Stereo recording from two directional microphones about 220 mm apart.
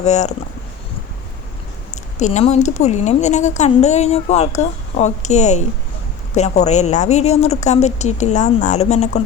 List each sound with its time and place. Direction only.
0.0 s a woman's voice: 30° left (ahead or behind)
2.1 s a woman's voice: 30° left (ahead or behind)